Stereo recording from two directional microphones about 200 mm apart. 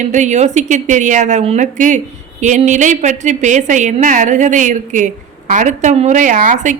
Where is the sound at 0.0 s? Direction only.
35° right (ahead or behind).